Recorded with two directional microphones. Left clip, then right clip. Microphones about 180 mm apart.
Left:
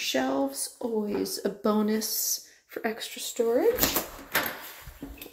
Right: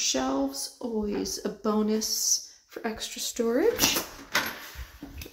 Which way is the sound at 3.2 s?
15° right (ahead or behind).